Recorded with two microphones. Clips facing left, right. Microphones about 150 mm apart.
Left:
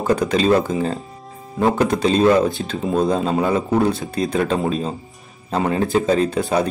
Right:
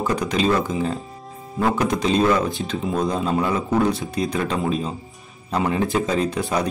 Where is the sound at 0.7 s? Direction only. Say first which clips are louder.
Left 2 dB; 45° left (ahead or behind).